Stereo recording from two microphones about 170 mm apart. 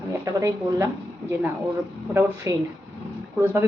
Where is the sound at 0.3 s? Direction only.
20° right (ahead or behind).